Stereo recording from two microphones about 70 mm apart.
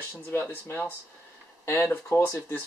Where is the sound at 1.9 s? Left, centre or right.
Left.